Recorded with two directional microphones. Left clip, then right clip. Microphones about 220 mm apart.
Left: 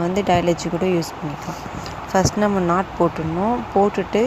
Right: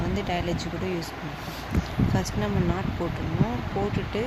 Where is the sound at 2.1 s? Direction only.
30° left (ahead or behind).